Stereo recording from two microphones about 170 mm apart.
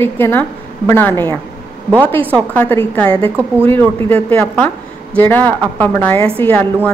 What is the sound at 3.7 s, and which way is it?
A woman's voice, 10° left (ahead or behind).